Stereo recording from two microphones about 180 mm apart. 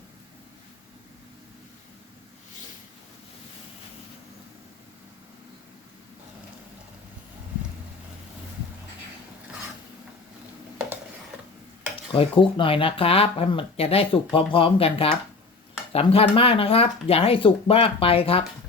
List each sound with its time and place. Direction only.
12.1 s speech: 30° left (ahead or behind)